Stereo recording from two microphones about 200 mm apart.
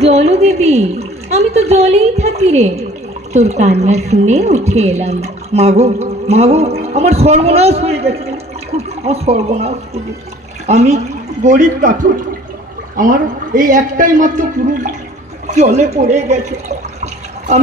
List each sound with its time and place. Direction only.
0.0 s a woman's voice: 30° right (ahead or behind)
13.6 s a woman's voice: 40° right (ahead or behind)